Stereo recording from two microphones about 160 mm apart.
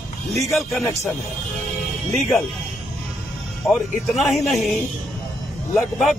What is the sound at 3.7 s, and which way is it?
A man's voice, centre (ahead or behind).